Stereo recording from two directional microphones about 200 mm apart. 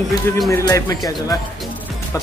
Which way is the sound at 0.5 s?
15° left (ahead or behind).